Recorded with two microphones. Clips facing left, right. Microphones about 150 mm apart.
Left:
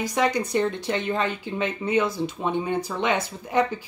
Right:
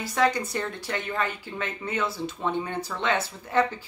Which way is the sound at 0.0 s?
15° left (ahead or behind).